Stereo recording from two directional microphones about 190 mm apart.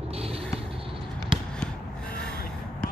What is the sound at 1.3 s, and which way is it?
Basketball bounce, 25° right (ahead or behind).